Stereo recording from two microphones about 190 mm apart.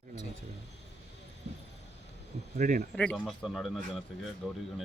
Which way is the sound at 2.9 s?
5° left (ahead or behind).